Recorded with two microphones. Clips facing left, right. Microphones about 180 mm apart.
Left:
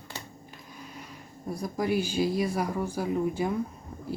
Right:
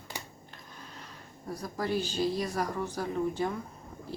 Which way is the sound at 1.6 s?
10° left (ahead or behind).